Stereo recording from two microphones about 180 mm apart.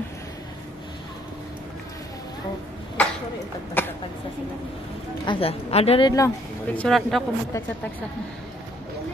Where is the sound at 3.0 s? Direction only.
5° left (ahead or behind).